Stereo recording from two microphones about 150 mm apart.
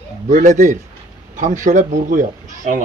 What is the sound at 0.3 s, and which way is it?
Speech, 55° right (ahead or behind).